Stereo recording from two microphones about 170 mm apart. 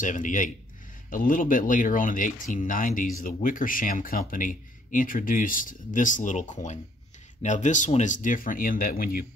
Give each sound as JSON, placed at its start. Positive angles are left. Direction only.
{"t": 0.0, "sound": "speech", "side_deg": 50}